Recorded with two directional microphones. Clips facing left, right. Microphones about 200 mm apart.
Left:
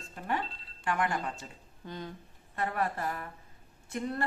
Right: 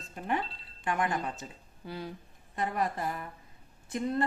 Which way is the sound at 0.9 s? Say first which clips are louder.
Right 1 dB; 20° right (ahead or behind).